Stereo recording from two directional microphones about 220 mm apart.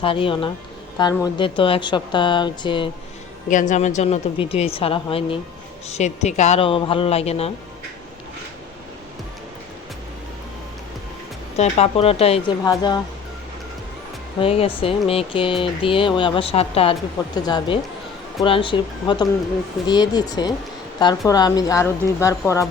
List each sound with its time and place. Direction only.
0.0 s speech: 25° left (ahead or behind)
3.5 s speech: 35° left (ahead or behind)
11.5 s speech: 30° left (ahead or behind)
14.3 s a woman's voice: 25° left (ahead or behind)